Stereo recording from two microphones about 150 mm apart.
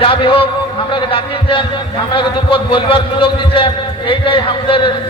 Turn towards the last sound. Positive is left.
turn(degrees=35)  # may be behind; listen again after turning